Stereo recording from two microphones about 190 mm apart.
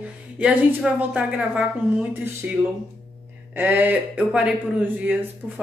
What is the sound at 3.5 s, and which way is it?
A woman's voice, 10° right (ahead or behind).